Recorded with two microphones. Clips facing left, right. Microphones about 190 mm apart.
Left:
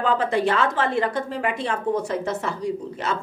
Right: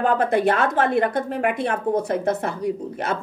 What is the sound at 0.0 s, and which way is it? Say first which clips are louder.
A woman's voice: right 2 dB; 55° right (ahead or behind).